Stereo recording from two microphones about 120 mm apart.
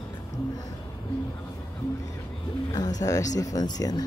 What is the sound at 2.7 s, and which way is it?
Bird, 35° left (ahead or behind).